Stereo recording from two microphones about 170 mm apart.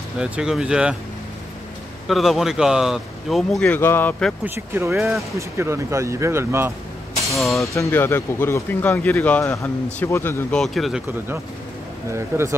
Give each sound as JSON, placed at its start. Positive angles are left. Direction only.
{"t": 0.2, "sound": "speech", "side_deg": -5}
{"t": 2.0, "sound": "speech", "side_deg": 0}
{"t": 4.6, "sound": "speech", "side_deg": -15}
{"t": 4.9, "sound": "speech", "side_deg": 0}
{"t": 5.6, "sound": "speech", "side_deg": -15}
{"t": 7.3, "sound": "speech", "side_deg": 0}
{"t": 7.6, "sound": "speech", "side_deg": 20}
{"t": 10.5, "sound": "speech", "side_deg": 0}
{"t": 12.1, "sound": "speech", "side_deg": -15}